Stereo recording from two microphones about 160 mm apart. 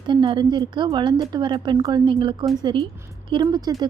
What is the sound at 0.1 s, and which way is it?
A woman's voice, 30° right (ahead or behind).